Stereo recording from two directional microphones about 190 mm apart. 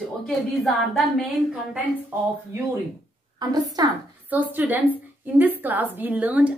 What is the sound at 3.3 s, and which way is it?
A woman's voice, 20° right (ahead or behind).